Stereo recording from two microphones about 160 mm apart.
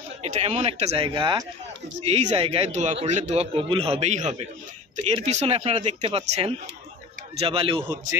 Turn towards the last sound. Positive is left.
turn(degrees=-35)  # may be behind; listen again after turning